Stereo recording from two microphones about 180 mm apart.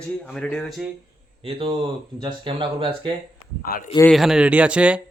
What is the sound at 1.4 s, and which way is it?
Speech, 30° right (ahead or behind).